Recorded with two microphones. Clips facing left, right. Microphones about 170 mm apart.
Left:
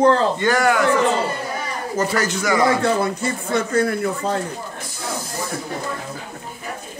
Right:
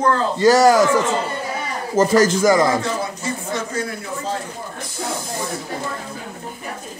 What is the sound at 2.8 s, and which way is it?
Speech, 60° left (ahead or behind).